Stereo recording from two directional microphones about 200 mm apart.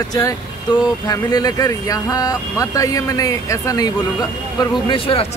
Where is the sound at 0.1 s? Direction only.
15° left (ahead or behind).